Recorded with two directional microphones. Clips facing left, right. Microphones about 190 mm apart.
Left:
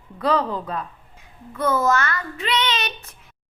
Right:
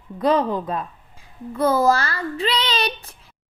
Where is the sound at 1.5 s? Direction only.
35° right (ahead or behind).